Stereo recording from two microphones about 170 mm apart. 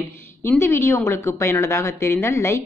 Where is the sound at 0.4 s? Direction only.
15° left (ahead or behind).